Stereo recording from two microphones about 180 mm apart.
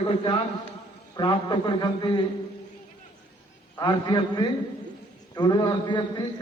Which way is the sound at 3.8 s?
20° left (ahead or behind).